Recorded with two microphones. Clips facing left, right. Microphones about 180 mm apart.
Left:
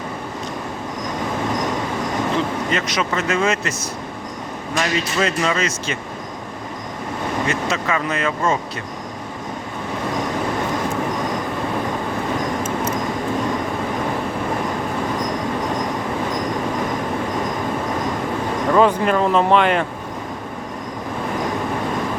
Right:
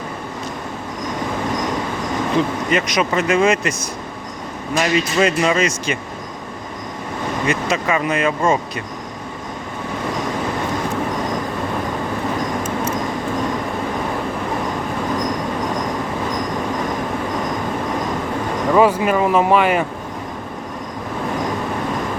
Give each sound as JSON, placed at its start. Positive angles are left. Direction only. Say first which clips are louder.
{"t": 2.7, "sound": "speech", "louder": "right 6 dB", "side_deg": -15}
{"t": 4.8, "sound": "speech", "louder": "right 4 dB", "side_deg": -15}
{"t": 7.4, "sound": "speech", "louder": "right 5 dB", "side_deg": -15}
{"t": 18.7, "sound": "speech", "louder": "right 1 dB", "side_deg": -10}